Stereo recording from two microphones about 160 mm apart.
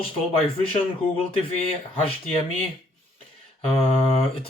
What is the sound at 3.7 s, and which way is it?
Speech, 35° left (ahead or behind).